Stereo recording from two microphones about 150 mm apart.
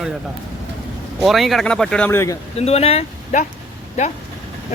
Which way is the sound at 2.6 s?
45° left (ahead or behind).